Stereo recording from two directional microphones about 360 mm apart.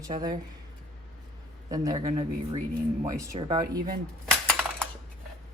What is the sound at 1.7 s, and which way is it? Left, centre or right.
Speech, centre.